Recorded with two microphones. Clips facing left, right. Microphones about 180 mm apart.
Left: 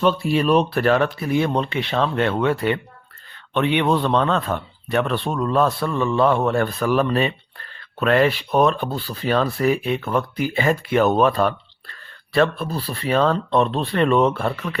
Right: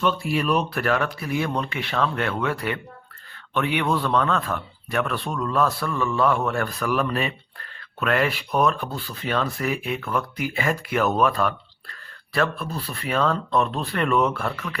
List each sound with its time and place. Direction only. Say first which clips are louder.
0.0 s speech: left 5 dB; 30° left (ahead or behind)